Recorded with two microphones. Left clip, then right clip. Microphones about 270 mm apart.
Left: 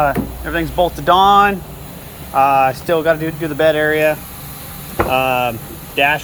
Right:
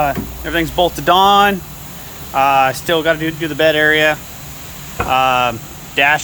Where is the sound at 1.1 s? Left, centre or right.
Right.